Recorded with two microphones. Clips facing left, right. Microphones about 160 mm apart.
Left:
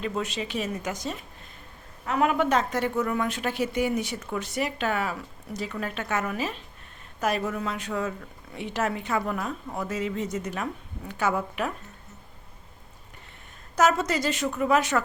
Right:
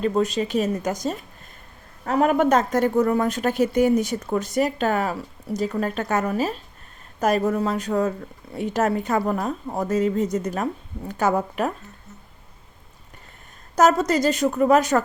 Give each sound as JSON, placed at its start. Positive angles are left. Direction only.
{"t": 0.0, "sound": "speech", "side_deg": -40}
{"t": 13.7, "sound": "speech", "side_deg": -40}